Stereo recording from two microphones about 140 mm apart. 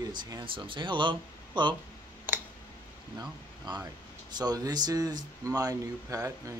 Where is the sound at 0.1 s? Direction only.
30° right (ahead or behind).